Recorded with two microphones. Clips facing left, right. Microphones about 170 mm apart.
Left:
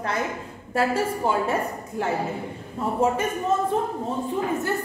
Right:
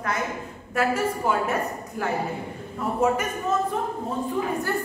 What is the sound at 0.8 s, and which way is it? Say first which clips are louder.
Speech: left 1 dB; 30° left (ahead or behind).